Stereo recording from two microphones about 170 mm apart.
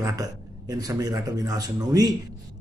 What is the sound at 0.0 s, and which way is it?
A man's voice, 20° right (ahead or behind).